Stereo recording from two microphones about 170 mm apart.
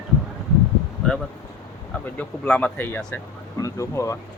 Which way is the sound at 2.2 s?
10° left (ahead or behind).